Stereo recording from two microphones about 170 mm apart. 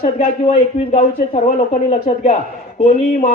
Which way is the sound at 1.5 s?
40° left (ahead or behind).